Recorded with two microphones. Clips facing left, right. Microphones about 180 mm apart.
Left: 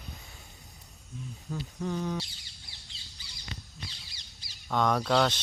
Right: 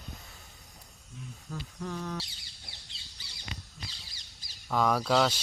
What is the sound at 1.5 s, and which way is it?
Speech, centre (ahead or behind).